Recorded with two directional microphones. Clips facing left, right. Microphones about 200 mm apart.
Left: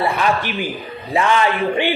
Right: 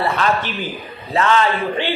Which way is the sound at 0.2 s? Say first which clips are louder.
Left 1 dB; 10° left (ahead or behind).